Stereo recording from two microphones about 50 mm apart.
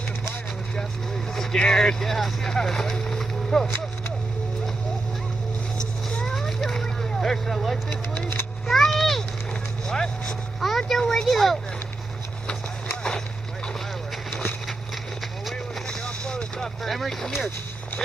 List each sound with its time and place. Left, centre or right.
1.3 s speech: centre
6.3 s vehicle: centre
7.9 s speech: left
8.6 s a sound: centre
9.8 s vehicle: centre
10.6 s vehicle: centre
15.9 s vehicle: centre
16.8 s speech: centre